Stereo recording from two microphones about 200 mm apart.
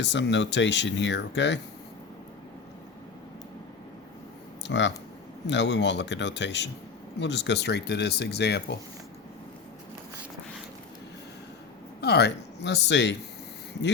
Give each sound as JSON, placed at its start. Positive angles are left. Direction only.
{"t": 0.0, "sound": "speech", "side_deg": 65}
{"t": 4.6, "sound": "speech", "side_deg": 65}
{"t": 11.9, "sound": "speech", "side_deg": 55}